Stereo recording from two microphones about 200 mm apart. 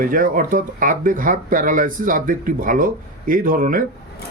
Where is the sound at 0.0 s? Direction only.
45° right (ahead or behind).